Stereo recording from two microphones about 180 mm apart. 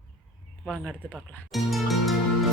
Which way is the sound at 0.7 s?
5° left (ahead or behind).